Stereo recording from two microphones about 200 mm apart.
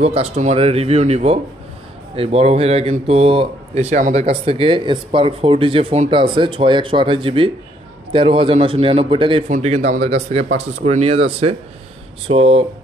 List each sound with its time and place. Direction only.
0.0 s speech: 30° right (ahead or behind)